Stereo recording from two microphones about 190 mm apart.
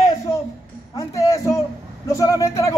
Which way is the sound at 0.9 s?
15° left (ahead or behind).